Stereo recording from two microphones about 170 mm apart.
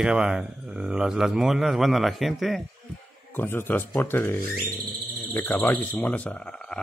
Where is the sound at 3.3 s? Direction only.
10° left (ahead or behind).